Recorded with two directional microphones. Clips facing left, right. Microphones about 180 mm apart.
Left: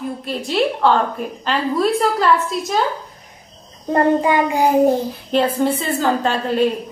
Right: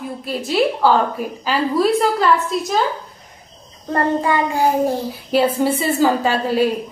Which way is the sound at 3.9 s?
15° left (ahead or behind).